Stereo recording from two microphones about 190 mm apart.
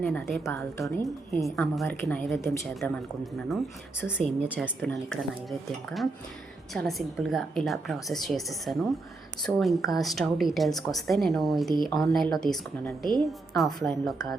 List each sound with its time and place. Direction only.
0.0 s a woman's voice: 5° left (ahead or behind)
0.4 s a woman's voice: 15° left (ahead or behind)
1.5 s a woman's voice: centre (ahead or behind)
4.4 s a woman's voice: 5° right (ahead or behind)